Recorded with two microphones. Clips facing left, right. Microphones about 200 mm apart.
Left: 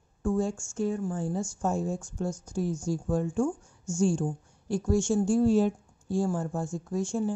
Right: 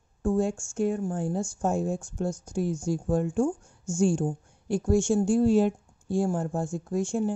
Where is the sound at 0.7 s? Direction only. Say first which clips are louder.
Right 2 dB; 50° right (ahead or behind).